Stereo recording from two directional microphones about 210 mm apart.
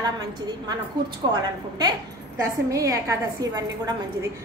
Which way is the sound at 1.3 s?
20° right (ahead or behind).